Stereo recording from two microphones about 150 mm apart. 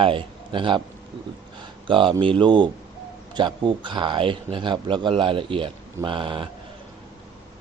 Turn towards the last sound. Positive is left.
turn(degrees=-35)  # may be behind; listen again after turning